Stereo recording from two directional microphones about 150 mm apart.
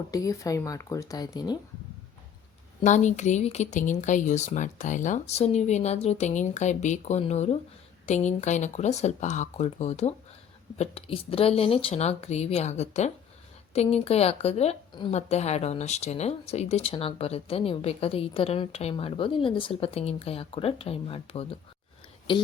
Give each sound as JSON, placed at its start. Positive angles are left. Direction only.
{"t": 0.1, "sound": "speech", "side_deg": 20}
{"t": 2.8, "sound": "speech", "side_deg": 50}